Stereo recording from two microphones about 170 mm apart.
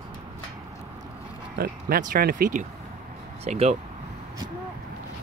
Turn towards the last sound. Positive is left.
turn(degrees=-40)  # may be behind; listen again after turning